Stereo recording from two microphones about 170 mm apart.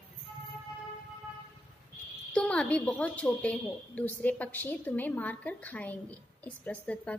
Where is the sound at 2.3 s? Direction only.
5° left (ahead or behind).